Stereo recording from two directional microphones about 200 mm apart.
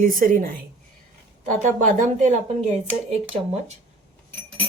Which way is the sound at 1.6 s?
40° right (ahead or behind).